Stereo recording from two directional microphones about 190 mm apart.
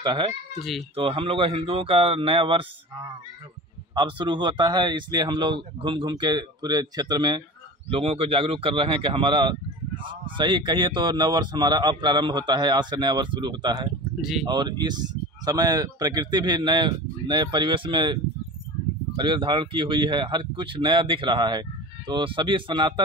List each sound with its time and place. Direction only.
0.0 s speech: 25° right (ahead or behind)
3.9 s speech: 25° right (ahead or behind)